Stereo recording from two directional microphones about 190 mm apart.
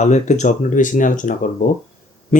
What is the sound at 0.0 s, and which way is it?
Speech, 40° left (ahead or behind).